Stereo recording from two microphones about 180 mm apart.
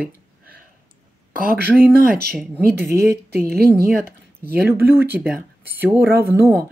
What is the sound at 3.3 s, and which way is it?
Speech, 60° right (ahead or behind).